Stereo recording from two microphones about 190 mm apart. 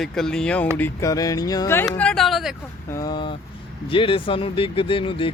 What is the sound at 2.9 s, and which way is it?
Speech, 20° left (ahead or behind).